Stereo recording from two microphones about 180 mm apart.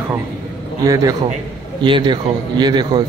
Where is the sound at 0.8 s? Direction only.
20° right (ahead or behind).